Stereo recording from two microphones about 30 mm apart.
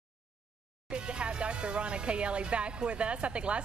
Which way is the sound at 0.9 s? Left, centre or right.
Right.